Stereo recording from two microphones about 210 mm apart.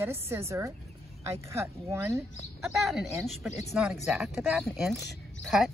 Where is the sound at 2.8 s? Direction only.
Centre (ahead or behind).